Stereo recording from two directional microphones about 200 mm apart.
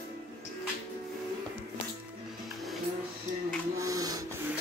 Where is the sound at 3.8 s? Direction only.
15° right (ahead or behind).